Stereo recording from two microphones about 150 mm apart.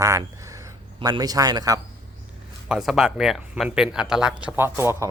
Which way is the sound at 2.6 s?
5° right (ahead or behind).